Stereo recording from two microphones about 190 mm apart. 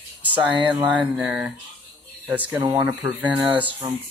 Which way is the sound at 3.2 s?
25° right (ahead or behind).